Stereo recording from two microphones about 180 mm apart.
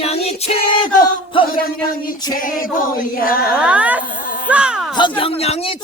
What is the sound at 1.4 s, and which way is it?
A capella, 55° left (ahead or behind).